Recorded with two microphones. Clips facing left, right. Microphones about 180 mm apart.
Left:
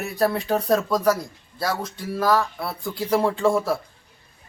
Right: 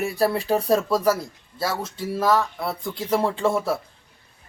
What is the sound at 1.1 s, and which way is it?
Speech, 25° right (ahead or behind).